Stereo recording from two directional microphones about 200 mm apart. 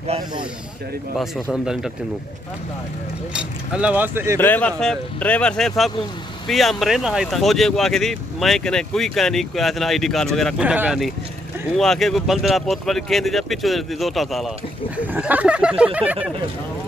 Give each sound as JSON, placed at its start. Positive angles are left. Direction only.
{"t": 0.0, "sound": "speech", "side_deg": -30}
{"t": 1.1, "sound": "speech", "side_deg": 0}
{"t": 3.3, "sound": "speech", "side_deg": -5}
{"t": 4.4, "sound": "speech", "side_deg": 10}